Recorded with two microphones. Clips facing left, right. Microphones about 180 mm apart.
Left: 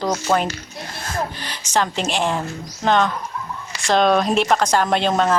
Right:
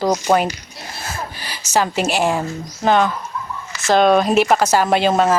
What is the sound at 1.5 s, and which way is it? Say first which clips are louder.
Speech: right 5 dB; 5° right (ahead or behind).